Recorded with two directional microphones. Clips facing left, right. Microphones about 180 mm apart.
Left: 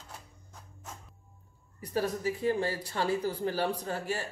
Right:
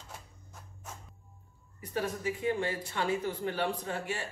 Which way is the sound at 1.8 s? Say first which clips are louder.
Left 3 dB; 35° left (ahead or behind).